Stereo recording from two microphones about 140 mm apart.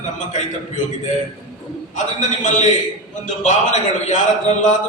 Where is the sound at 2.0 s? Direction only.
60° left (ahead or behind).